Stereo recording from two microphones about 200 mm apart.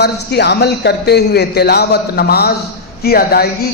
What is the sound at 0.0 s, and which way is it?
A man's voice, 55° left (ahead or behind).